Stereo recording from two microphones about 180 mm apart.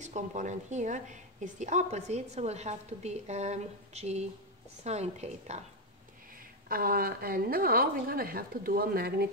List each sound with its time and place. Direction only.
0.0 s a woman's voice: 40° right (ahead or behind)
6.3 s a woman's voice: 55° right (ahead or behind)